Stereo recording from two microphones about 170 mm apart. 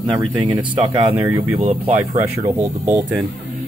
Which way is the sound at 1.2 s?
10° right (ahead or behind).